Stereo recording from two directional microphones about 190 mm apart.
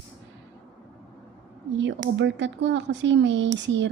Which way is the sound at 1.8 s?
75° right (ahead or behind).